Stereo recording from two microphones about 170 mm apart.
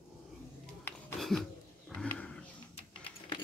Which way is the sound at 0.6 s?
Centre (ahead or behind).